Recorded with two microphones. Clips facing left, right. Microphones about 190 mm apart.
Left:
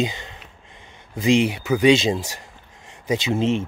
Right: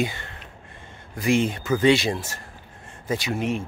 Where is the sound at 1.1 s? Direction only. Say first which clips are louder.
Left 3 dB; 20° left (ahead or behind).